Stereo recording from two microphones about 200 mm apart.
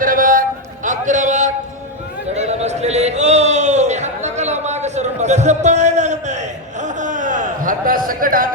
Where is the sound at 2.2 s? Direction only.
35° right (ahead or behind).